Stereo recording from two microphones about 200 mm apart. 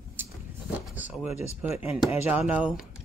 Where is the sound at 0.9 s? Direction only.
10° right (ahead or behind).